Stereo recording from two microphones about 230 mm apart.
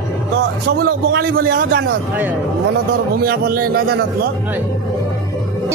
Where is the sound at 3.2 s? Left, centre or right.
Right.